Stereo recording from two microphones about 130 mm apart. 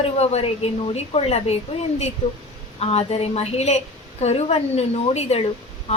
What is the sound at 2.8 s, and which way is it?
A woman's voice, 50° left (ahead or behind).